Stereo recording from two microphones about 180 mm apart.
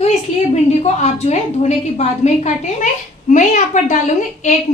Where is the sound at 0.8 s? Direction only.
35° left (ahead or behind).